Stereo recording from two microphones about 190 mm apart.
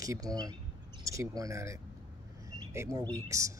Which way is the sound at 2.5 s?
15° right (ahead or behind).